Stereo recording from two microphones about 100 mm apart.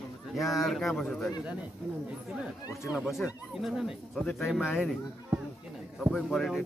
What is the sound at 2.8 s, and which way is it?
Speech, 5° right (ahead or behind).